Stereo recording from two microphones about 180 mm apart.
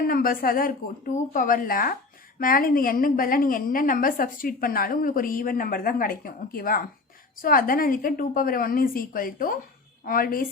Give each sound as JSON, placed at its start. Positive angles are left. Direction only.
{"t": 0.0, "sound": "a woman's voice", "side_deg": 55}